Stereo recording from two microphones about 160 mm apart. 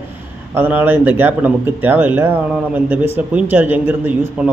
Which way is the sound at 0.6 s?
10° right (ahead or behind).